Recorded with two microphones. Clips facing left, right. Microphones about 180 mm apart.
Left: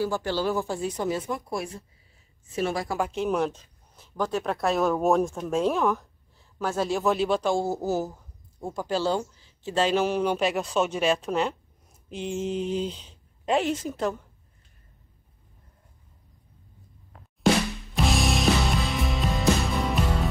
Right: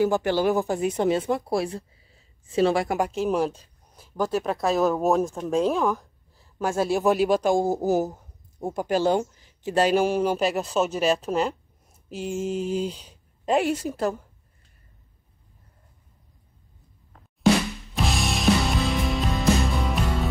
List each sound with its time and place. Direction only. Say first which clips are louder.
0.0 s speech: right 5 dB; 15° right (ahead or behind)
3.1 s speech: right 2 dB; 5° right (ahead or behind)
6.6 s speech: right 3 dB; 10° right (ahead or behind)
17.9 s music: left 2 dB; centre (ahead or behind)